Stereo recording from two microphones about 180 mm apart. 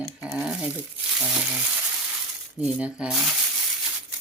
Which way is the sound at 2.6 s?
5° right (ahead or behind).